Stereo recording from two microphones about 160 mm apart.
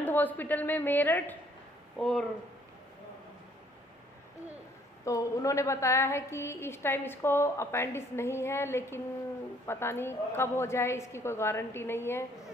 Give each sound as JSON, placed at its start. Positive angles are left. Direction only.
{"t": 0.0, "sound": "a woman's voice", "side_deg": 10}
{"t": 5.0, "sound": "a woman's voice", "side_deg": 20}